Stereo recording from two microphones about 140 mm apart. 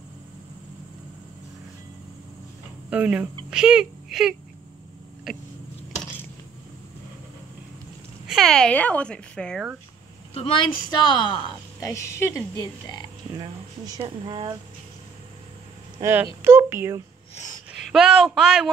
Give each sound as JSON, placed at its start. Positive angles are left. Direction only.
{"t": 2.9, "sound": "speech", "side_deg": -10}
{"t": 8.3, "sound": "speech", "side_deg": 0}
{"t": 10.3, "sound": "speech", "side_deg": 40}
{"t": 11.8, "sound": "speech", "side_deg": 20}
{"t": 13.4, "sound": "speech", "side_deg": -25}
{"t": 16.0, "sound": "speech", "side_deg": -15}
{"t": 17.7, "sound": "speech", "side_deg": -5}